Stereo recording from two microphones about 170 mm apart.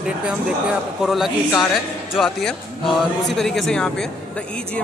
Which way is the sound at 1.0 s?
Centre (ahead or behind).